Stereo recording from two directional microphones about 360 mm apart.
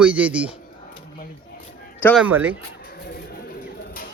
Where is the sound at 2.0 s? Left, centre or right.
Centre.